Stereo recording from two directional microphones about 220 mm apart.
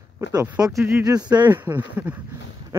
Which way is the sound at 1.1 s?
20° right (ahead or behind).